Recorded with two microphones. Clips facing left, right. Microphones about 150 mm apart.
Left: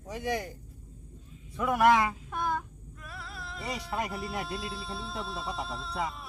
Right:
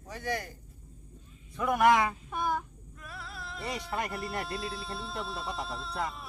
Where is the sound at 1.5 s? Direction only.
5° left (ahead or behind).